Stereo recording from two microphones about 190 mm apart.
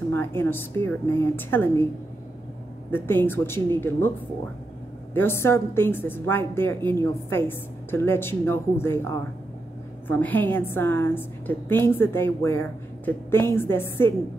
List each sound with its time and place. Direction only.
0.1 s a woman's voice: 10° left (ahead or behind)
2.9 s a woman's voice: 10° left (ahead or behind)
5.1 s a woman's voice: 10° left (ahead or behind)